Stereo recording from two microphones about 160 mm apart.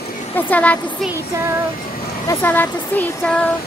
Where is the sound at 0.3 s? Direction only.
10° left (ahead or behind).